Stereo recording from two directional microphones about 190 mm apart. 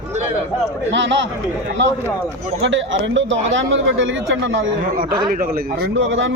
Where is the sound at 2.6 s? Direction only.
75° right (ahead or behind).